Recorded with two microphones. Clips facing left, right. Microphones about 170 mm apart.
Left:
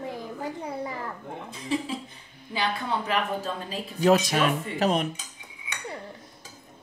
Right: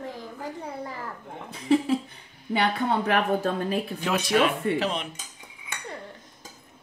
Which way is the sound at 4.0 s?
40° left (ahead or behind).